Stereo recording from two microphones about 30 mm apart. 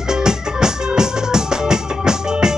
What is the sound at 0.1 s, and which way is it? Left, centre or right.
Music, right.